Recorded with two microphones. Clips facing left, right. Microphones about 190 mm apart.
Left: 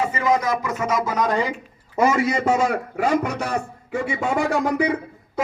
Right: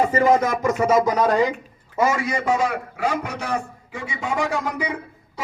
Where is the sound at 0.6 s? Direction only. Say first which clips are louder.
Right 5 dB; 30° right (ahead or behind).